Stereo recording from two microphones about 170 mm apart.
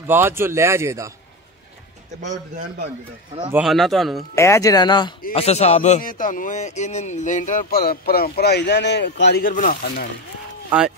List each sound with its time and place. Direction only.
0.0 s a man's voice: 15° right (ahead or behind)
3.5 s speech: centre (ahead or behind)
4.4 s speech: 20° left (ahead or behind)
5.3 s speech: 40° left (ahead or behind)